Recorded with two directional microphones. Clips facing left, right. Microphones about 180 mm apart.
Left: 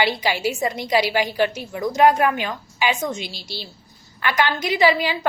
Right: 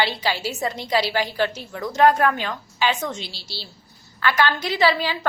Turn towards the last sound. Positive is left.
turn(degrees=15)  # may be behind; listen again after turning